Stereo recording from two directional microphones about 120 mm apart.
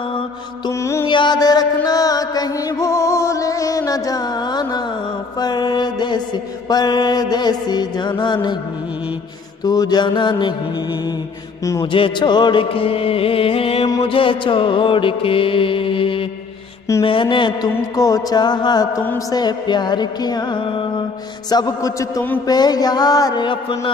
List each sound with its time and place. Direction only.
0.7 s a man's voice: 25° left (ahead or behind)
1.0 s music: 40° left (ahead or behind)
5.4 s mantra: 35° left (ahead or behind)
6.7 s music: 35° left (ahead or behind)
9.7 s music: 35° left (ahead or behind)
11.8 s mantra: 45° left (ahead or behind)
17.0 s music: 45° left (ahead or behind)
21.5 s a man's voice: 30° left (ahead or behind)
22.5 s music: 35° left (ahead or behind)